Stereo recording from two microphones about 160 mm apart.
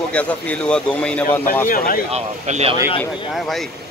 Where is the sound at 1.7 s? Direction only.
60° left (ahead or behind).